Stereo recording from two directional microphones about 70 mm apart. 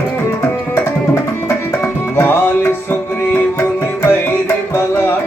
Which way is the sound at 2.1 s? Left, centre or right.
Left.